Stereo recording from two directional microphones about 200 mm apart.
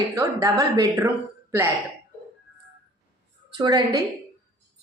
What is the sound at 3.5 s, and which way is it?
Speech, 20° right (ahead or behind).